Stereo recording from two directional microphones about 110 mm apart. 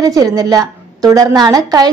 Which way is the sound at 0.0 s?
30° right (ahead or behind).